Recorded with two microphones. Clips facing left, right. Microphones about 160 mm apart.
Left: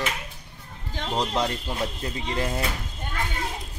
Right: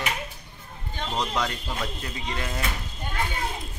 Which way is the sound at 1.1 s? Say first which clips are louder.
Left 3 dB; 30° left (ahead or behind).